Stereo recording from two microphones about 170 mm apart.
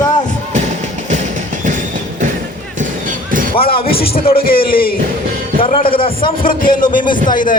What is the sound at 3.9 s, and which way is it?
A man's voice, 60° left (ahead or behind).